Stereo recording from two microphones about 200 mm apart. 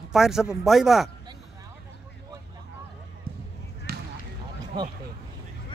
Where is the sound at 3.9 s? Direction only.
50° right (ahead or behind).